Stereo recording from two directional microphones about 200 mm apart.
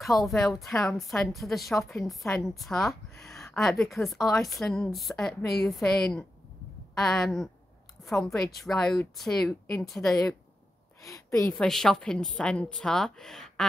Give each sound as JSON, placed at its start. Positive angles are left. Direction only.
{"t": 0.0, "sound": "a woman's voice", "side_deg": 0}
{"t": 11.0, "sound": "a woman's voice", "side_deg": 15}
{"t": 11.5, "sound": "a woman's voice", "side_deg": 0}